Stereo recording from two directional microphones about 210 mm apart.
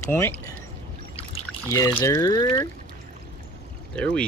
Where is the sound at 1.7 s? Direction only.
15° left (ahead or behind).